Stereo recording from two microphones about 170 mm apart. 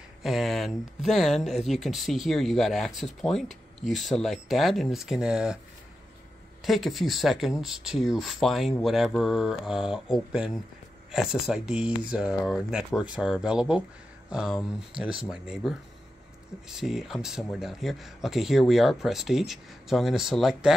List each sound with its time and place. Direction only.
0.2 s speech: centre (ahead or behind)
6.6 s speech: centre (ahead or behind)